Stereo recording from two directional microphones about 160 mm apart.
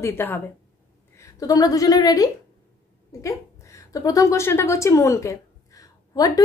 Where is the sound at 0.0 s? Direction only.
15° left (ahead or behind).